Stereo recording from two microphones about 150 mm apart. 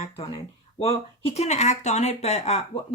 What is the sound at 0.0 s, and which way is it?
Speech, 35° left (ahead or behind).